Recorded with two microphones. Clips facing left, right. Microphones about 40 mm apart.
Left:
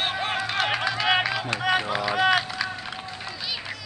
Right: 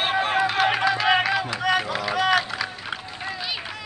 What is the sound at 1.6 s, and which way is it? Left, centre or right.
Run, centre.